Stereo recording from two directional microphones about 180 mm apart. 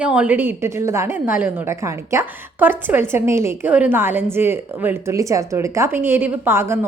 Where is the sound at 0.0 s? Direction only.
5° right (ahead or behind).